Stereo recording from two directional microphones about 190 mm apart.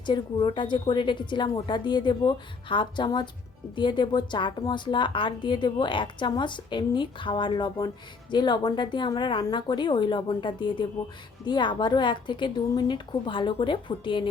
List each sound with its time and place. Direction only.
0.0 s a woman's voice: 25° left (ahead or behind)